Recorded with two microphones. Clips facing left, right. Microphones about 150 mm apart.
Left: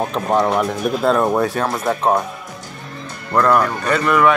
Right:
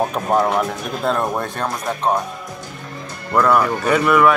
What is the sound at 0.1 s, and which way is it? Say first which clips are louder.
Speech: left 1 dB; 5° right (ahead or behind).